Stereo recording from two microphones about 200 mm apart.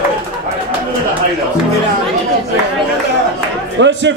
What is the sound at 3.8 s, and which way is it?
Music, 65° right (ahead or behind).